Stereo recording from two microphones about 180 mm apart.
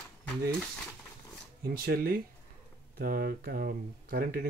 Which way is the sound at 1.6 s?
55° right (ahead or behind).